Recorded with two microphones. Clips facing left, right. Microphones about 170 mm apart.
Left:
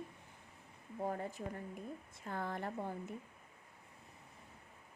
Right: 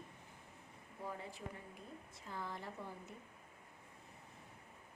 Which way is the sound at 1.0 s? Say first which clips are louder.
Left 7 dB; 50° left (ahead or behind).